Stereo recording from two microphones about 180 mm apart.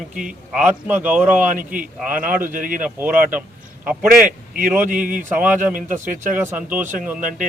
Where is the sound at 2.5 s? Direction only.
50° right (ahead or behind).